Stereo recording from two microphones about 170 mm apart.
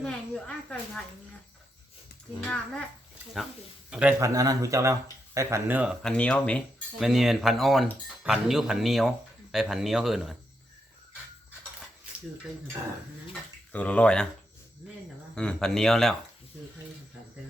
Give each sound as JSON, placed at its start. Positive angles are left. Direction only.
{"t": 0.0, "sound": "speech", "side_deg": 5}
{"t": 2.4, "sound": "speech", "side_deg": 5}
{"t": 3.8, "sound": "a man's voice", "side_deg": -5}
{"t": 4.2, "sound": "speech", "side_deg": -20}
{"t": 13.7, "sound": "speech", "side_deg": 10}
{"t": 15.4, "sound": "speech", "side_deg": 5}